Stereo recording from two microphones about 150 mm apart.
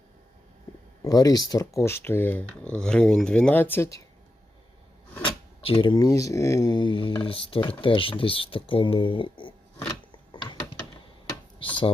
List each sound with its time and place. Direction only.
1.0 s speech: 25° left (ahead or behind)
5.2 s speech: 35° left (ahead or behind)
11.6 s a sound: 35° left (ahead or behind)